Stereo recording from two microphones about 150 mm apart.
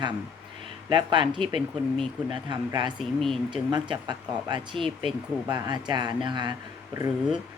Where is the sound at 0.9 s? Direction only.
30° right (ahead or behind).